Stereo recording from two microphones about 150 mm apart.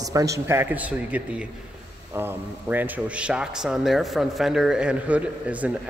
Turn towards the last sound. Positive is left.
turn(degrees=-10)  # may be behind; listen again after turning